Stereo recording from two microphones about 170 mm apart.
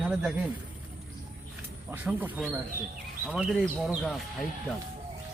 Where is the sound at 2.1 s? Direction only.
10° right (ahead or behind).